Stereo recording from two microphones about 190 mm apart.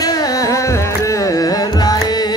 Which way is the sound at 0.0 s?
20° left (ahead or behind).